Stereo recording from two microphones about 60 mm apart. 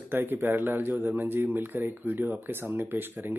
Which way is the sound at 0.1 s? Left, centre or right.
Right.